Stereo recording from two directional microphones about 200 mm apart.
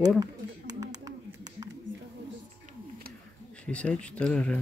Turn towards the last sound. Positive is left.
turn(degrees=5)  # may be behind; listen again after turning